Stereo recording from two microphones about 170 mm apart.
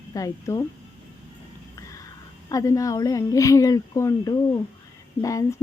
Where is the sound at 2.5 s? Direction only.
20° left (ahead or behind).